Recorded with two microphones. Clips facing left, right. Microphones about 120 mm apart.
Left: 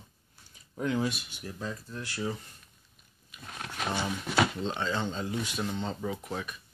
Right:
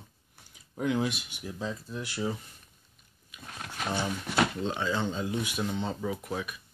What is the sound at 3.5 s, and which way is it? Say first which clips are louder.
Speech: even; centre (ahead or behind).